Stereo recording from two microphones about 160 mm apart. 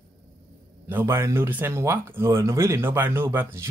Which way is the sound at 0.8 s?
15° right (ahead or behind).